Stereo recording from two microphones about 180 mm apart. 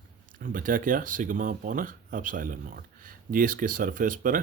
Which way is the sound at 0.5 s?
50° right (ahead or behind).